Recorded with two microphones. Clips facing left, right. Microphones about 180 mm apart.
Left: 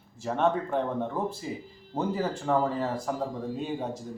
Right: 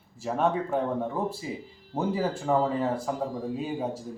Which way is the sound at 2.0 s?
5° right (ahead or behind).